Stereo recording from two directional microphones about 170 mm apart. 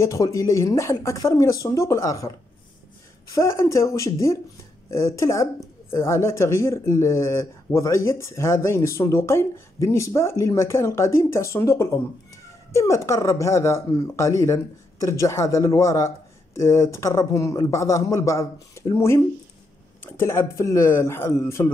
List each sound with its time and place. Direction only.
0.0 s speech: 20° left (ahead or behind)